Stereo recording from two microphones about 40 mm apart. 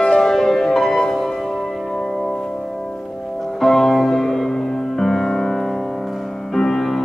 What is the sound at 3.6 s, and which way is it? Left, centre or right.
Music, centre.